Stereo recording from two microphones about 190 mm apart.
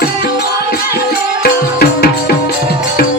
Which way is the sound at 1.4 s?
55° left (ahead or behind).